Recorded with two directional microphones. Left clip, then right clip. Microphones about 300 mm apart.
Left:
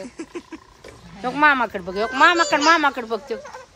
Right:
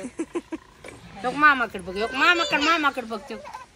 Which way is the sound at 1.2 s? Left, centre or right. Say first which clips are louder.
Left 2 dB; centre.